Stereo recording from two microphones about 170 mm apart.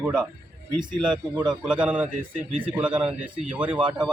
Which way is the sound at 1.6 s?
5° right (ahead or behind).